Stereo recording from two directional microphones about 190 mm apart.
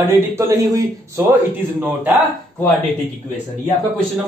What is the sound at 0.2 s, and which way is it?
A man's voice, 15° right (ahead or behind).